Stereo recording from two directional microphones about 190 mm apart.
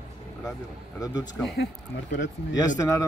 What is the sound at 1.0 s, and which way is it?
Speech, 20° left (ahead or behind).